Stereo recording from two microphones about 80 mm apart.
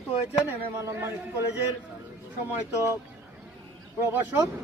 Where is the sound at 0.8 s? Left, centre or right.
Right.